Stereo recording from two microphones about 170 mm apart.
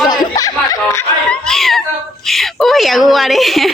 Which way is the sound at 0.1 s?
20° left (ahead or behind).